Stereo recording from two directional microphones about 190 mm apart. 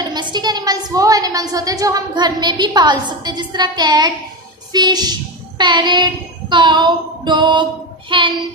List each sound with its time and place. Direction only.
0.0 s a woman's voice: 25° right (ahead or behind)
5.6 s child singing: 25° right (ahead or behind)
8.1 s a woman's voice: 25° right (ahead or behind)